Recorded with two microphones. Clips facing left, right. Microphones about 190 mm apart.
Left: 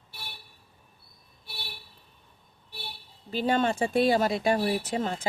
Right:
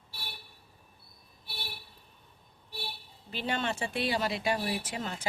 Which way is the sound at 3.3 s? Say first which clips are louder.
Left 8 dB; 45° left (ahead or behind).